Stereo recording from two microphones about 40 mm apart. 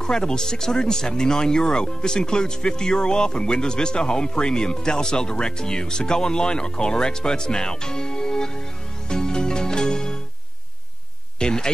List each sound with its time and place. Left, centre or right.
0.0 s speech: centre
9.1 s music: centre
11.3 s a sound: centre